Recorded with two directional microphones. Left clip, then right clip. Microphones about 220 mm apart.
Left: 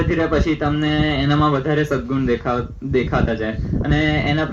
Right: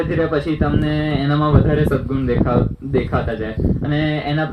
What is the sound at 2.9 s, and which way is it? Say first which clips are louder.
Speech: left 1 dB; 40° left (ahead or behind).